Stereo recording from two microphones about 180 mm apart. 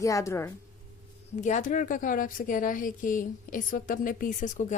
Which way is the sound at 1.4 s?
45° left (ahead or behind).